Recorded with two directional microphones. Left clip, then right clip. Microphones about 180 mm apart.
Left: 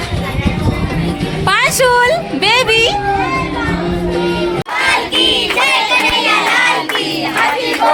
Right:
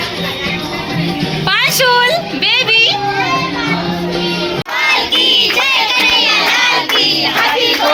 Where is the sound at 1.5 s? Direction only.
30° left (ahead or behind).